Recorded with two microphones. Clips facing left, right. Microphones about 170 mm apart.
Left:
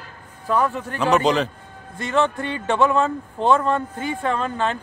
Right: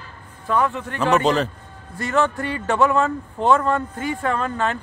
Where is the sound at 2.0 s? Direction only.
25° left (ahead or behind).